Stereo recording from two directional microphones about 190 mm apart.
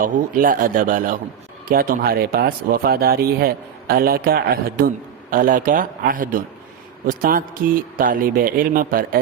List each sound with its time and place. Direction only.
0.0 s speech: 45° right (ahead or behind)